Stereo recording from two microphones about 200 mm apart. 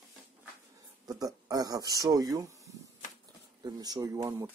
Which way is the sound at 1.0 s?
20° right (ahead or behind).